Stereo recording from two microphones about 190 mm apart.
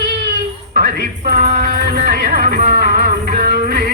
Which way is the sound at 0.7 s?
55° right (ahead or behind).